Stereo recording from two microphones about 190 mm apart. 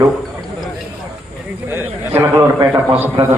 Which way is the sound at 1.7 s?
10° right (ahead or behind).